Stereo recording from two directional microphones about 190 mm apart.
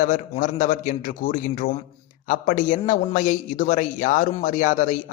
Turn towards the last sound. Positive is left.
turn(degrees=45)  # may be behind; listen again after turning